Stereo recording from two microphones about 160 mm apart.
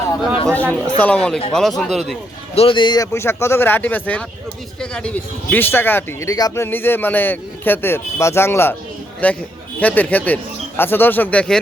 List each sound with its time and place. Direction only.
0.4 s speech: 5° left (ahead or behind)
2.6 s speech: 30° left (ahead or behind); by 11.6 s 5° left (ahead or behind)